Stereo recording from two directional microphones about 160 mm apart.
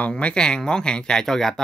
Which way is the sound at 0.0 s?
5° left (ahead or behind).